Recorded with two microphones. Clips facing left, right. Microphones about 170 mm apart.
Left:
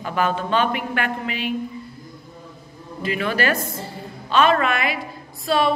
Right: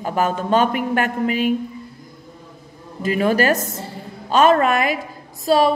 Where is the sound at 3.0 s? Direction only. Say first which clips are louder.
Right 5 dB; 40° right (ahead or behind).